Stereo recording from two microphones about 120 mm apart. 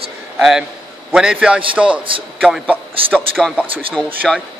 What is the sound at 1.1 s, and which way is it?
Speech, 5° right (ahead or behind).